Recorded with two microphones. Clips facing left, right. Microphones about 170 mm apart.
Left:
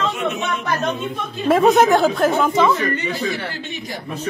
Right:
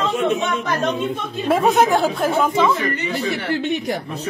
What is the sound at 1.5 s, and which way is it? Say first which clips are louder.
Speech: left 3 dB; centre (ahead or behind).